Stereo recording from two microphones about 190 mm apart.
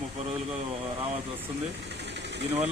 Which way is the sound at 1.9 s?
65° right (ahead or behind).